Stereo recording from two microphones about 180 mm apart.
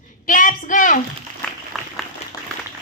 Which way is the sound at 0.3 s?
45° left (ahead or behind).